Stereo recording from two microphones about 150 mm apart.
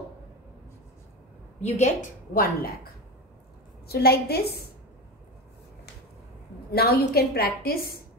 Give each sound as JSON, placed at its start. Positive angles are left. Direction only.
{"t": 1.6, "sound": "a woman's voice", "side_deg": 50}
{"t": 2.3, "sound": "a woman's voice", "side_deg": 85}
{"t": 6.7, "sound": "a woman's voice", "side_deg": 90}